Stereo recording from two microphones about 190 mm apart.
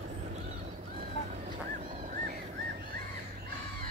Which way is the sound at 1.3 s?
45° right (ahead or behind).